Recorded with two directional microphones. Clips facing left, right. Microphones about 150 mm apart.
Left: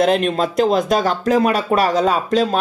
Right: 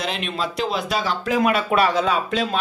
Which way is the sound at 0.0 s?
45° left (ahead or behind).